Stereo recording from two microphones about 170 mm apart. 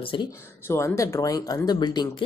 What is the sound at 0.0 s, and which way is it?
Speech, 30° left (ahead or behind).